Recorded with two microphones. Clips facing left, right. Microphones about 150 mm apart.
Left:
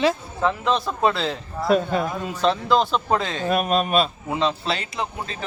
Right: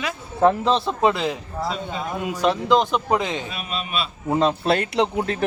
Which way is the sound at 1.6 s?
60° left (ahead or behind).